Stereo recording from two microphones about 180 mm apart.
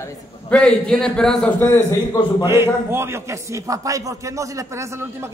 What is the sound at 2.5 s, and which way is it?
A man's voice, 15° right (ahead or behind).